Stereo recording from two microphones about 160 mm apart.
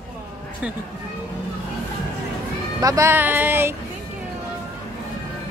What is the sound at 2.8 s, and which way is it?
Speech, 20° right (ahead or behind).